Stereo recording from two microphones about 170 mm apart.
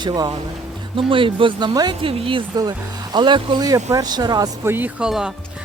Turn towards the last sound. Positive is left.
turn(degrees=-5)  # may be behind; listen again after turning